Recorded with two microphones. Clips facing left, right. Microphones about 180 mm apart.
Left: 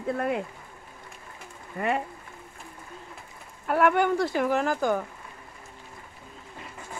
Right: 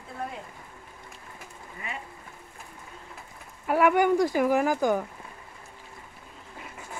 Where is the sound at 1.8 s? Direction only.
60° left (ahead or behind).